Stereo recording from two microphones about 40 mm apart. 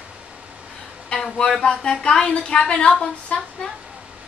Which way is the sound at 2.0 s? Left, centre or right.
Left.